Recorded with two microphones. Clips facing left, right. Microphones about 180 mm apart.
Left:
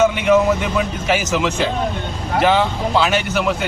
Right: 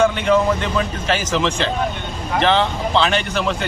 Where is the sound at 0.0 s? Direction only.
10° left (ahead or behind).